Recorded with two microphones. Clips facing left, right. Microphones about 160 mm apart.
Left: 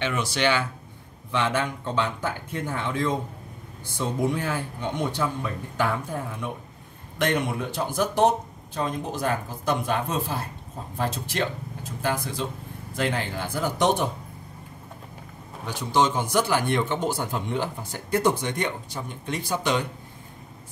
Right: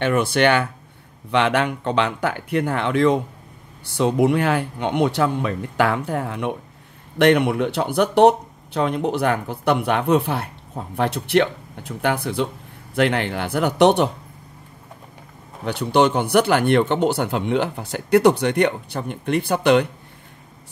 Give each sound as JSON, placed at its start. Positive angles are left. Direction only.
{"t": 0.0, "sound": "speech", "side_deg": -55}
{"t": 1.3, "sound": "speech", "side_deg": -70}
{"t": 15.6, "sound": "speech", "side_deg": -65}